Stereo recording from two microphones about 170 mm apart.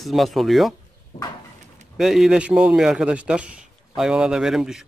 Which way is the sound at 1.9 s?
Centre (ahead or behind).